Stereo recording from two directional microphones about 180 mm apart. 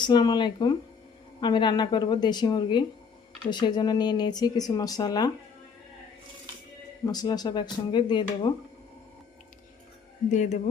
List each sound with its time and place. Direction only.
0.0 s speech: 25° left (ahead or behind)
7.0 s speech: 20° left (ahead or behind)
10.3 s speech: 40° left (ahead or behind)